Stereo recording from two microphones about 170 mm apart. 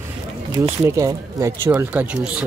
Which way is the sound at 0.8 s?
20° right (ahead or behind).